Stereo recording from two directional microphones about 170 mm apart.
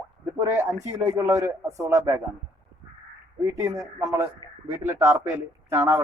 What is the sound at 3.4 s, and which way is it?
Speech, 20° right (ahead or behind).